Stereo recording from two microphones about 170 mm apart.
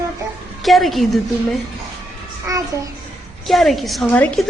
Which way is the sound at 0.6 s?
Centre (ahead or behind).